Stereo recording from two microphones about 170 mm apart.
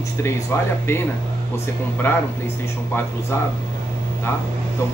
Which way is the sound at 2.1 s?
10° left (ahead or behind).